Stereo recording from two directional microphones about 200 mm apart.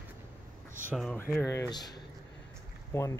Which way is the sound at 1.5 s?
20° left (ahead or behind).